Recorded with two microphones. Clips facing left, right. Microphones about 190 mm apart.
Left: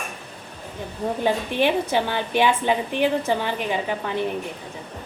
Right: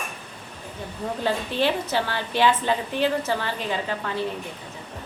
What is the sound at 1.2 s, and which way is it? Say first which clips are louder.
A woman's voice: left 2 dB; 15° left (ahead or behind).